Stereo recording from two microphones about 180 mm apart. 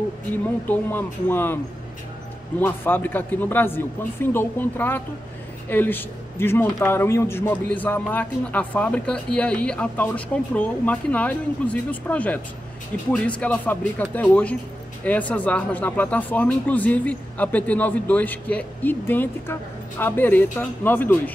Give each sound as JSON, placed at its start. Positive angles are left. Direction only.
{"t": 0.3, "sound": "speech", "side_deg": 10}
{"t": 2.6, "sound": "speech", "side_deg": 10}